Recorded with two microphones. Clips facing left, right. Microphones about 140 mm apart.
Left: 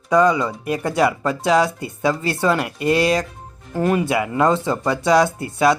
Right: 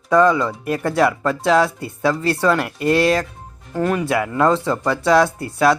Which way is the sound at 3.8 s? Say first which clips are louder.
Left 1 dB; 20° left (ahead or behind).